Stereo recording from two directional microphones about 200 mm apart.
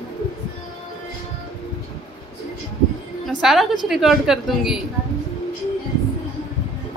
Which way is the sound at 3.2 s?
Centre (ahead or behind).